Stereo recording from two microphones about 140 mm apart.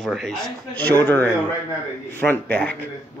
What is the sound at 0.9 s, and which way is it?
Speech, 15° left (ahead or behind).